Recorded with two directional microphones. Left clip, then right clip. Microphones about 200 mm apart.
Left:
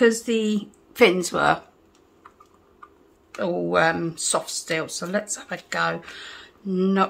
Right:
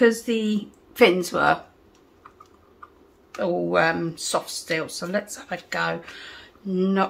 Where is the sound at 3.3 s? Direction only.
15° left (ahead or behind).